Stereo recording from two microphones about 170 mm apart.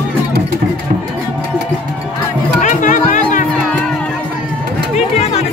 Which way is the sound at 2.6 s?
50° left (ahead or behind).